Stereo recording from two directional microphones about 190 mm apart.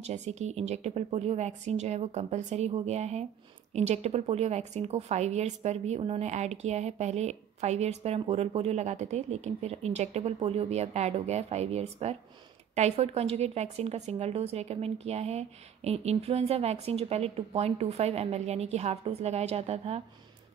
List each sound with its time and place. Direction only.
0.0 s a woman's voice: 35° right (ahead or behind)